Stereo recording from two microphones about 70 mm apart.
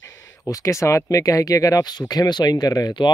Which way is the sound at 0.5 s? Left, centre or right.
Left.